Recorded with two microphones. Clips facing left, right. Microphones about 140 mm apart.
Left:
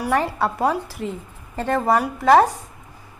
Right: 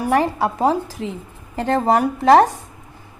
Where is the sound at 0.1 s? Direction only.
15° right (ahead or behind).